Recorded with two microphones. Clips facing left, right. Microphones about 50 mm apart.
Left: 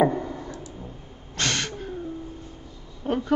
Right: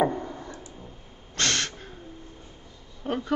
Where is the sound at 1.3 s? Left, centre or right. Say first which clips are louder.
Even; centre.